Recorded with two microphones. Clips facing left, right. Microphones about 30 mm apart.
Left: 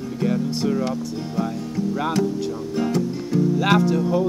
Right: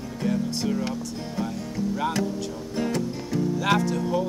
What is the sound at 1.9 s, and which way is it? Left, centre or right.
Music, centre.